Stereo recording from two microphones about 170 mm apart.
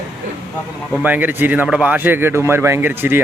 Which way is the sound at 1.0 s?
10° right (ahead or behind).